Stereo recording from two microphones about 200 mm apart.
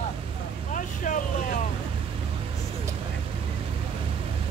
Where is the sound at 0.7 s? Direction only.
40° left (ahead or behind).